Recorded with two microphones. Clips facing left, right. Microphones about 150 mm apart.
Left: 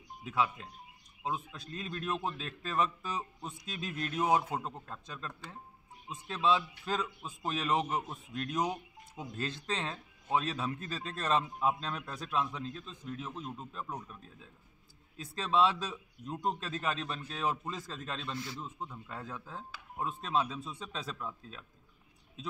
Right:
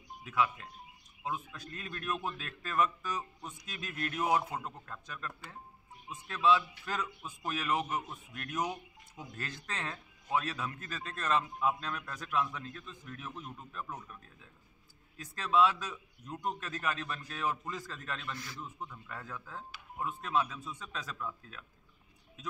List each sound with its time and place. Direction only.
0.2 s a man's voice: 25° left (ahead or behind)
15.1 s a man's voice: 25° left (ahead or behind)